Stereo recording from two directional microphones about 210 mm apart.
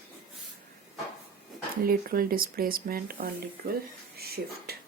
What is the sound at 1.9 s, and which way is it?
Speech, 45° right (ahead or behind).